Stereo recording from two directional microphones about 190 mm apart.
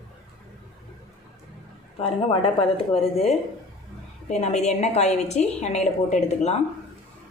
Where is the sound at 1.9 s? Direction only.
30° left (ahead or behind).